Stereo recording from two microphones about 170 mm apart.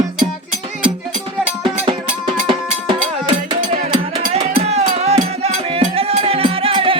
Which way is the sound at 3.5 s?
30° right (ahead or behind).